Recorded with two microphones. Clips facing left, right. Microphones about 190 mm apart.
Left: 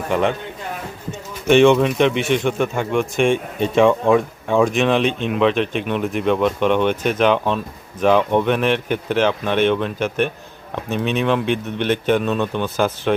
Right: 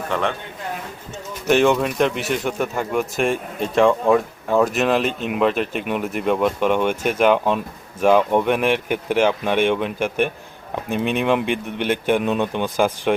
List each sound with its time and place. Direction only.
0.1 s speech: 15° left (ahead or behind)
1.5 s speech: 5° right (ahead or behind)